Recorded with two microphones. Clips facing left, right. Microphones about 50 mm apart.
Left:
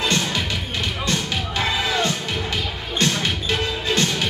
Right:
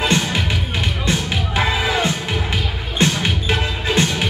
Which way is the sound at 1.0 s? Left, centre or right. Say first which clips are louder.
Right 3 dB; centre.